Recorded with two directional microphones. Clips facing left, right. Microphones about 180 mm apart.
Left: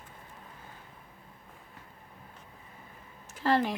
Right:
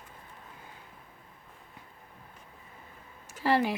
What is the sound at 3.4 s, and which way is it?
Speech, 5° right (ahead or behind).